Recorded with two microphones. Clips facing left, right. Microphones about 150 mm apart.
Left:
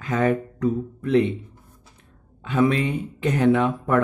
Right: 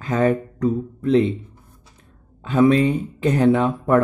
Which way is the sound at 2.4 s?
35° right (ahead or behind).